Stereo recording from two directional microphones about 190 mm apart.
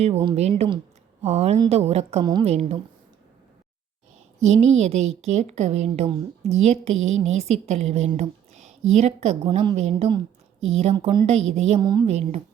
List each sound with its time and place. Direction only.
0.0 s a woman's voice: 30° right (ahead or behind)
4.4 s a woman's voice: 35° right (ahead or behind)
11.8 s speech: 25° right (ahead or behind)